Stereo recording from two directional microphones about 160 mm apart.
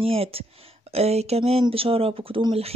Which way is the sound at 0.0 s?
35° right (ahead or behind).